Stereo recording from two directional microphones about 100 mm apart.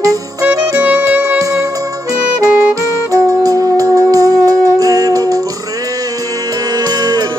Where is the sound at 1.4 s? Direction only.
35° right (ahead or behind).